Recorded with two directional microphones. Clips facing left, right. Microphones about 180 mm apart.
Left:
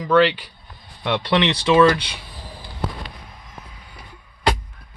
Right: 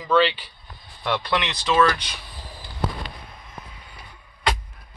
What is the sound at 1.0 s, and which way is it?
Speech, 20° left (ahead or behind).